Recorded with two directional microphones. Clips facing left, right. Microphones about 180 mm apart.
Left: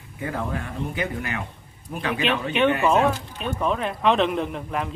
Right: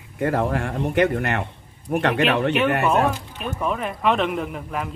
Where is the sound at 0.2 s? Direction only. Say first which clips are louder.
Right 7 dB; 70° right (ahead or behind).